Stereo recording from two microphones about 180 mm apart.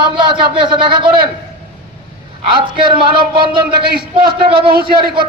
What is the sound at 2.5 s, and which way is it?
Speech, 30° right (ahead or behind).